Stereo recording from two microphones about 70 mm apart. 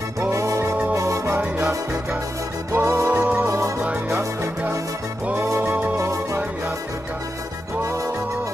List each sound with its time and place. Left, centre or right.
0.3 s music: right
2.7 s music: right
3.1 s music: right
3.4 s music: right
5.6 s music: right